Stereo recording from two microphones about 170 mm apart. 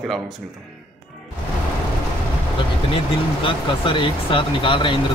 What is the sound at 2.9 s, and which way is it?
Speech, 30° left (ahead or behind).